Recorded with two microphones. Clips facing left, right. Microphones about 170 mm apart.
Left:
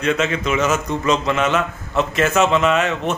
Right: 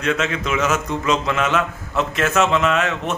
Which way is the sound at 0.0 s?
Centre (ahead or behind).